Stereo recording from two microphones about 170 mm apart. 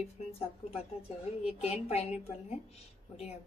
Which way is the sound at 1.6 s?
40° left (ahead or behind).